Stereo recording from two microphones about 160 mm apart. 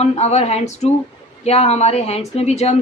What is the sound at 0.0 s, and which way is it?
A woman's voice, 40° left (ahead or behind).